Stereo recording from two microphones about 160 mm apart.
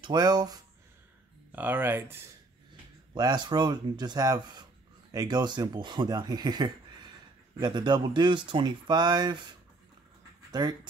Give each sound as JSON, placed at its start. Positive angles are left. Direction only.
{"t": 0.0, "sound": "speech", "side_deg": -25}
{"t": 1.5, "sound": "speech", "side_deg": -10}
{"t": 3.2, "sound": "speech", "side_deg": -25}